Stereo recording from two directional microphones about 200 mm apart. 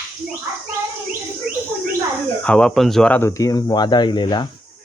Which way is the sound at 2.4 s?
5° left (ahead or behind).